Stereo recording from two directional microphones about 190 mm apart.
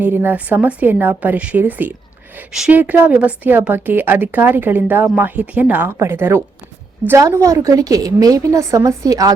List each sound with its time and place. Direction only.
0.0 s a woman's voice: 10° right (ahead or behind)